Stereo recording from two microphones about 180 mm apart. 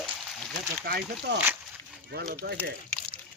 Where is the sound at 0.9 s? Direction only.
65° right (ahead or behind).